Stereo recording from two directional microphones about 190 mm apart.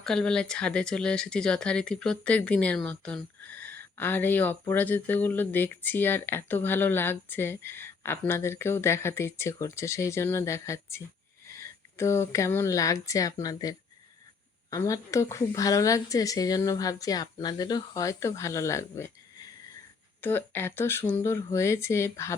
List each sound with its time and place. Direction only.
0.0 s speech: 5° left (ahead or behind)